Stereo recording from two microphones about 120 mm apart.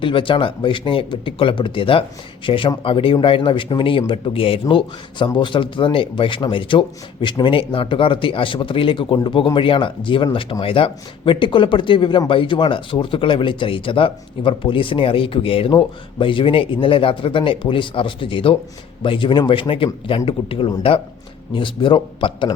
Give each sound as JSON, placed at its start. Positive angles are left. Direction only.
{"t": 0.0, "sound": "speech", "side_deg": 45}